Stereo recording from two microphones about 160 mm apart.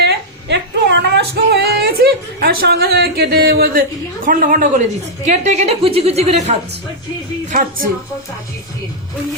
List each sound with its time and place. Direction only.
0.0 s female singing: 90° right; by 3.8 s 65° right (ahead or behind)
4.3 s a woman's voice: 60° right (ahead or behind)
5.3 s a woman's voice: 45° right (ahead or behind)
7.5 s a woman's voice: 60° right (ahead or behind)